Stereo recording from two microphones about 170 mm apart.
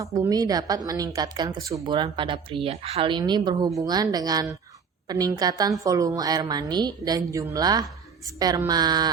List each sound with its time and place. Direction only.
0.0 s speech: 20° right (ahead or behind)